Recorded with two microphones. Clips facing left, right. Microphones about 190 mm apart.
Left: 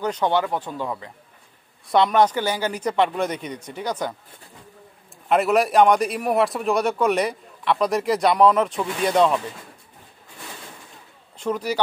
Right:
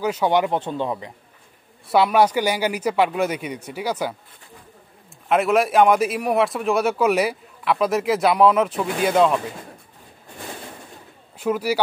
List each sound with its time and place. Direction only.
0.0 s speech: 10° right (ahead or behind)
1.9 s speech: 5° right (ahead or behind)
5.3 s a man's voice: centre (ahead or behind)
11.3 s a man's voice: 5° right (ahead or behind)